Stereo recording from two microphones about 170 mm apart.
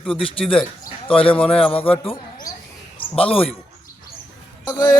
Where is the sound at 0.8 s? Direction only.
30° left (ahead or behind).